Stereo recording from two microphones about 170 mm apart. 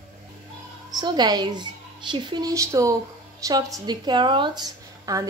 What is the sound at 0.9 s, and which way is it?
A woman's voice, 25° right (ahead or behind).